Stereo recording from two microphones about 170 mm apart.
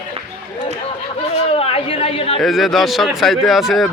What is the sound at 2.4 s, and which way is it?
Speech, centre (ahead or behind).